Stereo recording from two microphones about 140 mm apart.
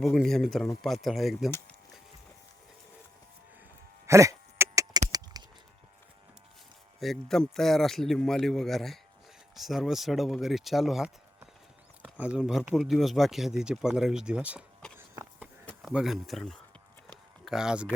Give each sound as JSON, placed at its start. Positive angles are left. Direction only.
{"t": 0.0, "sound": "speech", "side_deg": 0}
{"t": 1.5, "sound": "speech", "side_deg": 20}
{"t": 4.0, "sound": "a sound", "side_deg": -20}
{"t": 7.0, "sound": "speech", "side_deg": 0}
{"t": 14.9, "sound": "a sound", "side_deg": -15}
{"t": 15.8, "sound": "speech", "side_deg": -5}